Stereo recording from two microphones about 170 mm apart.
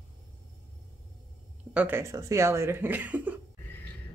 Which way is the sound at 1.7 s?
10° right (ahead or behind).